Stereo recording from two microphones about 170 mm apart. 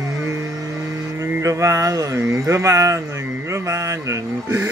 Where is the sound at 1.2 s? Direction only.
15° right (ahead or behind).